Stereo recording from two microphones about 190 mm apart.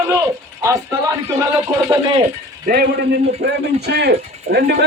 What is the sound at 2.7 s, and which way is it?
A man's voice, 50° right (ahead or behind).